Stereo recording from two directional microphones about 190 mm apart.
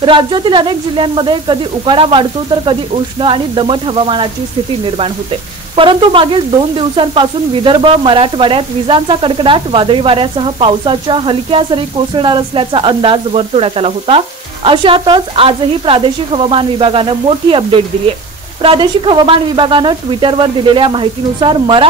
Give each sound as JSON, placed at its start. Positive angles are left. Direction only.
{"t": 0.0, "sound": "speech", "side_deg": -25}
{"t": 5.8, "sound": "speech", "side_deg": -25}